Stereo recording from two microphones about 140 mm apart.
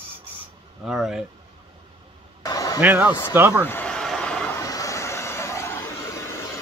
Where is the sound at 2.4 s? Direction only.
25° left (ahead or behind).